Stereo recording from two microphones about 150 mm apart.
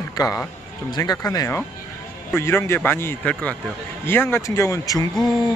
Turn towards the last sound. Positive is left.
turn(degrees=5)  # may be behind; listen again after turning